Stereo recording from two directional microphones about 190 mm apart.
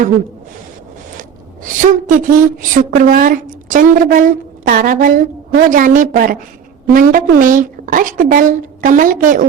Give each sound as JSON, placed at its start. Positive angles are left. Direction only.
{"t": 1.6, "sound": "a woman's voice", "side_deg": -45}